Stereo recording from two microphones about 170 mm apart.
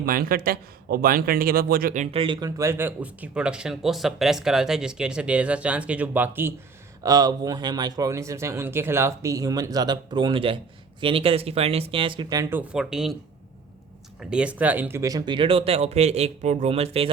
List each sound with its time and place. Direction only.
0.0 s a man's voice: 60° right (ahead or behind)
2.1 s speech: 30° right (ahead or behind); by 6.5 s 10° right (ahead or behind)
7.0 s speech: 20° right (ahead or behind); by 13.1 s 5° right (ahead or behind)
14.2 s speech: 5° right (ahead or behind); by 17.1 s 35° right (ahead or behind)